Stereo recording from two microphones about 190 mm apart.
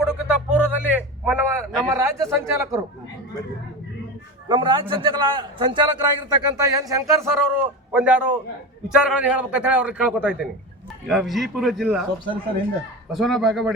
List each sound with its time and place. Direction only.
0.0 s a sound: 5° right (ahead or behind)
2.5 s speech: 15° right (ahead or behind)
4.4 s a man's voice: 25° right (ahead or behind); by 13.7 s centre (ahead or behind)